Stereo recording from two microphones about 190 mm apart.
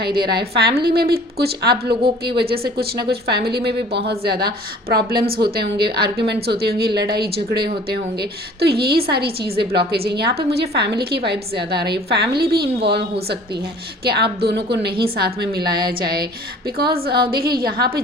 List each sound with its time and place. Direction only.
0.0 s a woman's voice: 55° right (ahead or behind)